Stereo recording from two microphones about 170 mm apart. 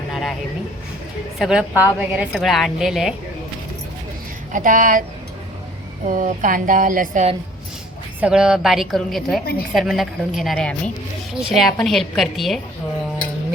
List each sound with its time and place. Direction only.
0.1 s a sound: centre (ahead or behind)
1.4 s a woman's voice: 5° right (ahead or behind)
4.5 s speech: 50° right (ahead or behind)
6.1 s speech: 50° right (ahead or behind)
8.2 s a woman's voice: 5° right (ahead or behind)
9.4 s a woman's voice: 65° left (ahead or behind)
9.7 s a woman's voice: centre (ahead or behind)